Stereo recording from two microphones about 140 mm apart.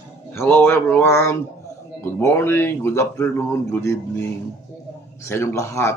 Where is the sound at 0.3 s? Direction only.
10° left (ahead or behind).